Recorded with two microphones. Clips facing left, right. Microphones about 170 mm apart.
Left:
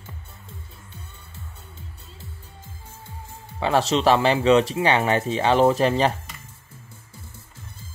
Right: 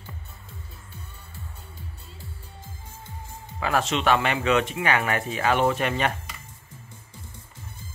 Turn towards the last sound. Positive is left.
turn(degrees=30)  # may be behind; listen again after turning